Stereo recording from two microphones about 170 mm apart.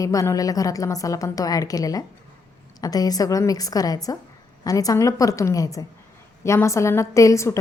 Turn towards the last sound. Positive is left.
turn(degrees=15)  # may be behind; listen again after turning